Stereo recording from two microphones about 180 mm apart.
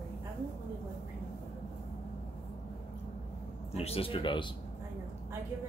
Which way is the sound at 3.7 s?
35° left (ahead or behind).